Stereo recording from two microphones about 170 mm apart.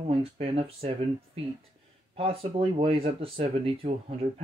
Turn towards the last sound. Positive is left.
turn(degrees=-35)  # may be behind; listen again after turning